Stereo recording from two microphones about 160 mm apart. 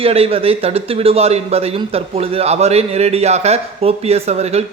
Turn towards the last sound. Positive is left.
turn(degrees=-40)  # may be behind; listen again after turning